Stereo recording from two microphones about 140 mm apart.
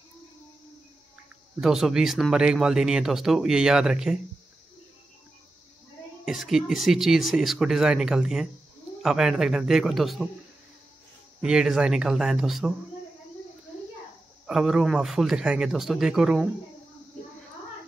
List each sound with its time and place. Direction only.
1.6 s speech: 5° right (ahead or behind)
6.2 s speech: 5° right (ahead or behind)
11.4 s speech: 5° right (ahead or behind)
14.4 s speech: 5° right (ahead or behind)